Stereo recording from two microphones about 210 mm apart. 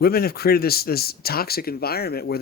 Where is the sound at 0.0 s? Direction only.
45° left (ahead or behind).